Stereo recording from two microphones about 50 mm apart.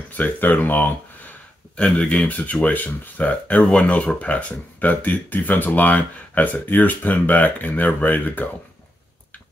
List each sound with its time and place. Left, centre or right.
0.1 s speech: left
1.8 s speech: centre
2.1 s speech: left